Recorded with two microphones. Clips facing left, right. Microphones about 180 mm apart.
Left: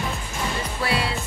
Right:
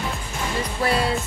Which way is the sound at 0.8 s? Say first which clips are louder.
Right 3 dB; 45° right (ahead or behind).